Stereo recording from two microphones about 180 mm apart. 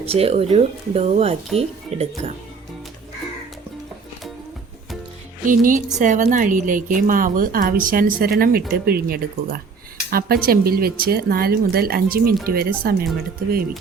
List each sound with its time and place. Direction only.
0.0 s speech: 35° right (ahead or behind)
5.5 s a woman's voice: 45° right (ahead or behind)